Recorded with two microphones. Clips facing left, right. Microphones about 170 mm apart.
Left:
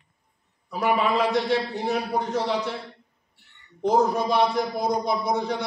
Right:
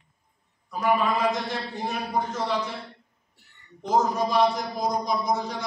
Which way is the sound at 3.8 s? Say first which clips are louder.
Left 3 dB; 65° left (ahead or behind).